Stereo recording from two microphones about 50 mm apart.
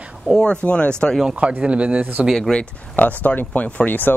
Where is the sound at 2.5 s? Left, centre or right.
Centre.